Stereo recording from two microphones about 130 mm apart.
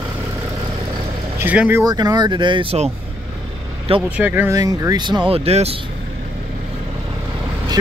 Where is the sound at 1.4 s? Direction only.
15° right (ahead or behind).